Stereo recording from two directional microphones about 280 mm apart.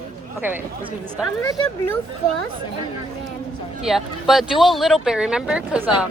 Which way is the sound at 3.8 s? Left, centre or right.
Centre.